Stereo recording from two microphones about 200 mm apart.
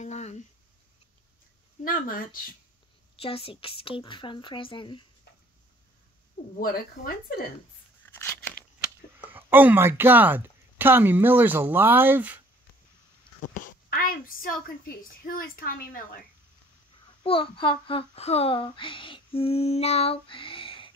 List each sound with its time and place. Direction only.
0.0 s a sound: 35° left (ahead or behind)
1.9 s a woman's voice: 45° left (ahead or behind)
3.2 s a child's voice: 30° left (ahead or behind)
6.6 s a woman's voice: 50° left (ahead or behind)
8.0 s crunch: 10° left (ahead or behind)
9.3 s speech: 10° right (ahead or behind)
13.5 s a woman's voice: 45° left (ahead or behind)
17.2 s a child's voice: 25° left (ahead or behind)